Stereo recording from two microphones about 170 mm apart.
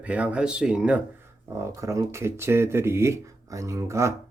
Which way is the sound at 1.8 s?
15° right (ahead or behind).